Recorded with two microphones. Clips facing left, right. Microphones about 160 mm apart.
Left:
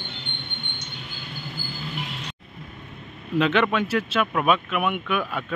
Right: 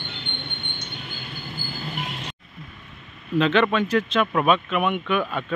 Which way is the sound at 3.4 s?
10° left (ahead or behind).